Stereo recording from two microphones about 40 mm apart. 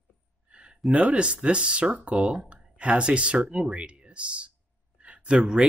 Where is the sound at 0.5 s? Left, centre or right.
Right.